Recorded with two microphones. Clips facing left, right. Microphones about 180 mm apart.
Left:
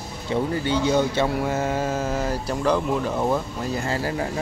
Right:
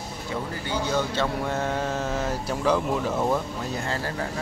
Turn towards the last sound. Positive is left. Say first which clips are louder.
# left 4 dB
turn(degrees=10)  # may be behind; listen again after turning